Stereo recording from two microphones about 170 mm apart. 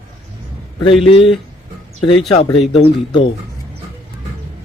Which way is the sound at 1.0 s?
35° left (ahead or behind).